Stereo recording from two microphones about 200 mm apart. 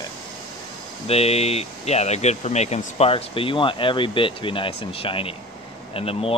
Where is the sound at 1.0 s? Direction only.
30° left (ahead or behind).